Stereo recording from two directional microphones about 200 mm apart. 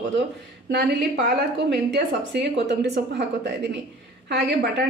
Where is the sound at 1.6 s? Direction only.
60° right (ahead or behind).